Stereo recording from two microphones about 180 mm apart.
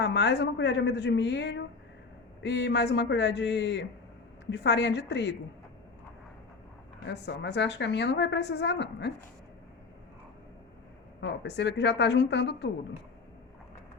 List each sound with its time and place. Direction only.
0.0 s a woman's voice: 75° left (ahead or behind)
7.0 s a woman's voice: 70° left (ahead or behind)
11.2 s a woman's voice: 75° left (ahead or behind)